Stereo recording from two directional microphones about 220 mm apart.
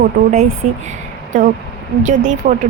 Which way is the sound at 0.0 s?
35° right (ahead or behind).